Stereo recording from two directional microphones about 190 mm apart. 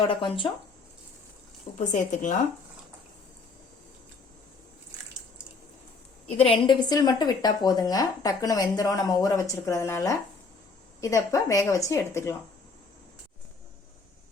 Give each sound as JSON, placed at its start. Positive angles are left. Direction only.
{"t": 0.1, "sound": "speech", "side_deg": 25}
{"t": 1.8, "sound": "a woman's voice", "side_deg": 40}
{"t": 6.3, "sound": "speech", "side_deg": 30}